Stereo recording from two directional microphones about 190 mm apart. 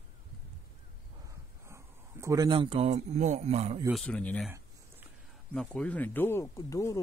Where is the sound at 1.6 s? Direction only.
15° right (ahead or behind); by 3.8 s 35° right (ahead or behind).